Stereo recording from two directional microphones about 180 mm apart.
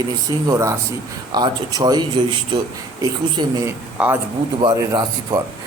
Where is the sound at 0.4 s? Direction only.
15° right (ahead or behind).